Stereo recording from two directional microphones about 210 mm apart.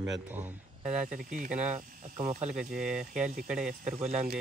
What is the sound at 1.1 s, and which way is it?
Speech, 40° right (ahead or behind).